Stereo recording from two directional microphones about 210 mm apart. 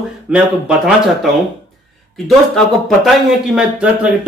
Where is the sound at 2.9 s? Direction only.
Centre (ahead or behind).